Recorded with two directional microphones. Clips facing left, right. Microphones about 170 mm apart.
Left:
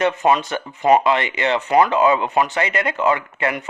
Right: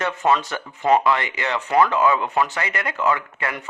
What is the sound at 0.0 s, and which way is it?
Speech, 20° left (ahead or behind).